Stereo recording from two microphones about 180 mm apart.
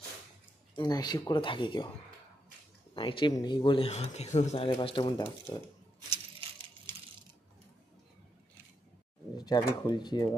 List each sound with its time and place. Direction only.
0.7 s speech: 20° left (ahead or behind)
2.9 s speech: 30° left (ahead or behind)
9.4 s speech: 25° left (ahead or behind)